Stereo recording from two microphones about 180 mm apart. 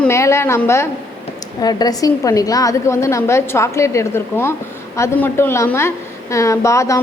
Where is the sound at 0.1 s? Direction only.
15° left (ahead or behind).